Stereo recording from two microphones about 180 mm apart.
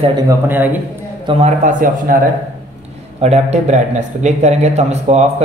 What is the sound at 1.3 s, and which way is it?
Speech, 35° right (ahead or behind).